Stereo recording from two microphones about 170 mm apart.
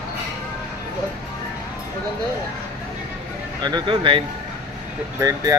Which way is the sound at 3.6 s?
25° right (ahead or behind).